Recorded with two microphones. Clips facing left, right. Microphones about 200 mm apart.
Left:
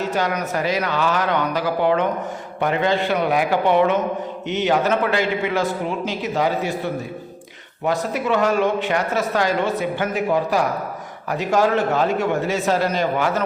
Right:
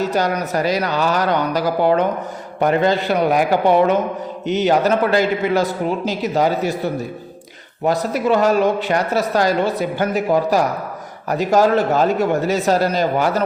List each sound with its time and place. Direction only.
0.1 s speech: 40° right (ahead or behind)